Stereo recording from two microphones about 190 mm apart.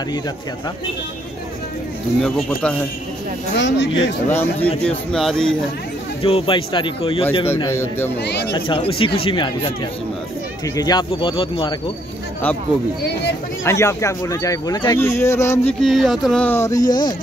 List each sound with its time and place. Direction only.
3.5 s speech: 70° left (ahead or behind)
4.3 s speech: 10° left (ahead or behind)
6.2 s a man's voice: 30° left (ahead or behind)
7.6 s speech: 15° left (ahead or behind)
8.2 s speech: 60° left (ahead or behind)
8.5 s speech: 25° left (ahead or behind)
10.8 s speech: 20° left (ahead or behind)
13.7 s speech: 15° left (ahead or behind)
15.8 s speech: centre (ahead or behind); by 17.1 s 20° left (ahead or behind)